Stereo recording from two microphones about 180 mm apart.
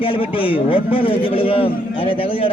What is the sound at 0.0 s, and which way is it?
A man's voice, 30° left (ahead or behind).